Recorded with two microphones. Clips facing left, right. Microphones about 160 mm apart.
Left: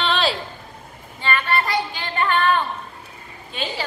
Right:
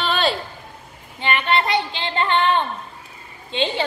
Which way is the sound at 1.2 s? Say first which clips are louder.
Right 2 dB; 20° right (ahead or behind).